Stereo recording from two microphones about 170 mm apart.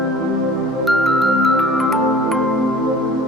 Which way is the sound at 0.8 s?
Centre (ahead or behind).